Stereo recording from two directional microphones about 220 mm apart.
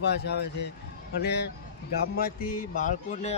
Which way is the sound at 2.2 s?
40° left (ahead or behind).